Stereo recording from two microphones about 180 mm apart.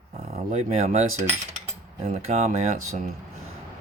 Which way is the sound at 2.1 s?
35° right (ahead or behind).